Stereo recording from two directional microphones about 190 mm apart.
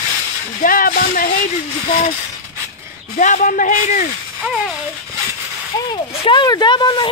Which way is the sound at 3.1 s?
45° left (ahead or behind).